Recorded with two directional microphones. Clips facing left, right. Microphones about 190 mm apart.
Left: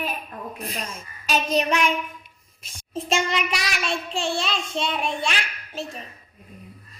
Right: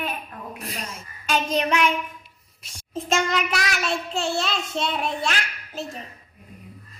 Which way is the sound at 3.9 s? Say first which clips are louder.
Left 2 dB; 5° right (ahead or behind).